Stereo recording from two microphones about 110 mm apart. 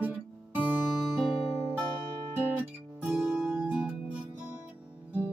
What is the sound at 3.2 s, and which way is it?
Music, 5° right (ahead or behind).